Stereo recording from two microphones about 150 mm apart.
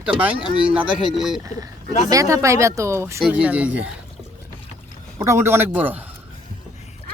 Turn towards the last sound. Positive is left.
turn(degrees=-10)  # may be behind; listen again after turning